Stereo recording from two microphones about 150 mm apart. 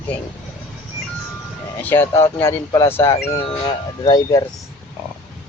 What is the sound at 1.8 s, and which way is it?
Speech, 15° left (ahead or behind).